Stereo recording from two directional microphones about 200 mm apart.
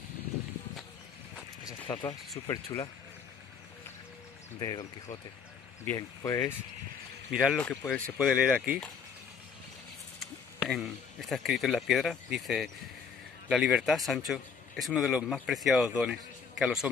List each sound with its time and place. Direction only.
1.6 s a sound: 20° left (ahead or behind)
2.3 s speech: 15° left (ahead or behind)
4.6 s speech: 20° left (ahead or behind)
7.2 s speech: centre (ahead or behind)
10.2 s speech: centre (ahead or behind)